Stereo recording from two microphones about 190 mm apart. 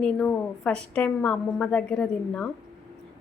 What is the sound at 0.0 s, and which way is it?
A woman's voice, 5° left (ahead or behind).